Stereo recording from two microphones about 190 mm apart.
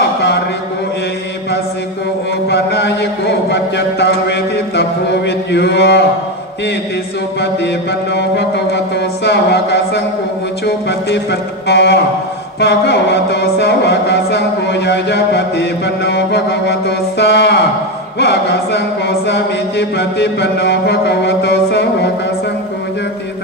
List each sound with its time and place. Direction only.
2.5 s chant: 60° left (ahead or behind)
8.1 s chant: 60° left (ahead or behind)